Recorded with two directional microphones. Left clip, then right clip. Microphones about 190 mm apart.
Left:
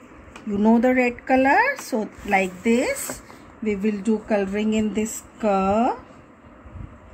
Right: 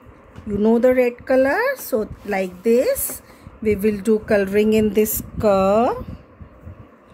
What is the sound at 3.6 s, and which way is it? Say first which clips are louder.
Speech: right 6 dB; 40° right (ahead or behind).